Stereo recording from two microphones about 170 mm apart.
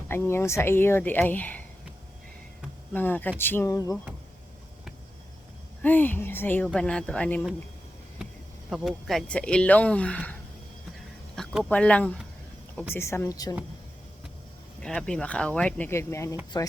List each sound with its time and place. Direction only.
0.1 s speech: 15° left (ahead or behind)
2.9 s speech: 10° left (ahead or behind)
5.8 s speech: 10° left (ahead or behind)
8.7 s speech: centre (ahead or behind)
11.3 s speech: 5° left (ahead or behind); by 13.6 s 20° left (ahead or behind)
14.8 s speech: 5° left (ahead or behind)